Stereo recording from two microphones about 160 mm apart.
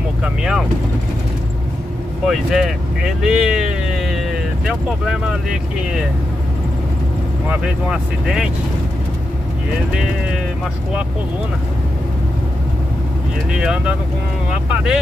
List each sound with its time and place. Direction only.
0.2 s speech: 5° right (ahead or behind)
2.2 s speech: centre (ahead or behind)
7.4 s speech: 5° right (ahead or behind)
13.5 s speech: 5° right (ahead or behind)